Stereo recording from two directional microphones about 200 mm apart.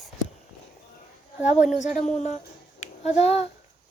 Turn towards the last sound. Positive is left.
turn(degrees=30)  # may be behind; listen again after turning